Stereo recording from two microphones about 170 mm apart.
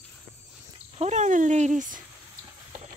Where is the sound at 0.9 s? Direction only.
40° right (ahead or behind).